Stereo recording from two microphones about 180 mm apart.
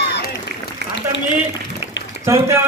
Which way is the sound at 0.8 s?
70° right (ahead or behind).